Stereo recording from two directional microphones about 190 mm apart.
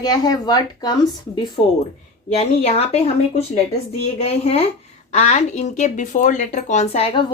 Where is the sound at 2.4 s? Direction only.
35° left (ahead or behind).